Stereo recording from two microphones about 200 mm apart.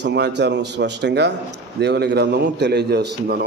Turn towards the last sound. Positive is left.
turn(degrees=-55)  # may be behind; listen again after turning